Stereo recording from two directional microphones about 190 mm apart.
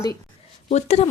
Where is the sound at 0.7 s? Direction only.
35° left (ahead or behind).